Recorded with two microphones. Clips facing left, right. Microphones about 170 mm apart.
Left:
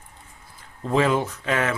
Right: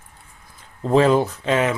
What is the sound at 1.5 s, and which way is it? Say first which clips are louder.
Speech: right 4 dB; 20° right (ahead or behind).